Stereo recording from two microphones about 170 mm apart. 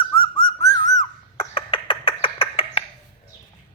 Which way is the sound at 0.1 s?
30° left (ahead or behind).